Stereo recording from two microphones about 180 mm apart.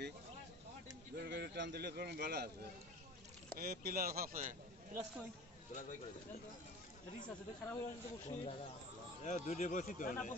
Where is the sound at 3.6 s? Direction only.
60° right (ahead or behind).